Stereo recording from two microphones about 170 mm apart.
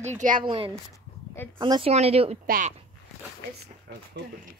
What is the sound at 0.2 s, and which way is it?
Speech, 50° right (ahead or behind).